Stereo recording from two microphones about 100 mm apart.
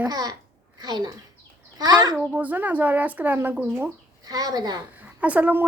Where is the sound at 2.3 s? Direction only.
15° right (ahead or behind).